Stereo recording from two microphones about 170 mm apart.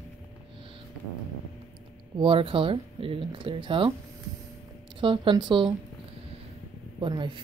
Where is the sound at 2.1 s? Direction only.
30° right (ahead or behind).